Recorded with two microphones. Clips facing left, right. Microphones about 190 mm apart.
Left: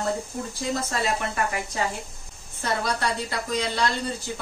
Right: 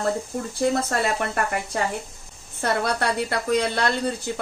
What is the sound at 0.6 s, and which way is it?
A woman's voice, 55° right (ahead or behind).